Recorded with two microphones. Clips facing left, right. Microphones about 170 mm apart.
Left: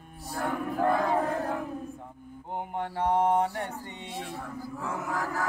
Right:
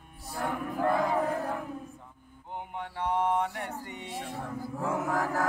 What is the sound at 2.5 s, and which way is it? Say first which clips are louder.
Mantra: left 5 dB; 45° left (ahead or behind).